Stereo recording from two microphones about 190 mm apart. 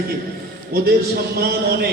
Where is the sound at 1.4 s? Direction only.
55° right (ahead or behind).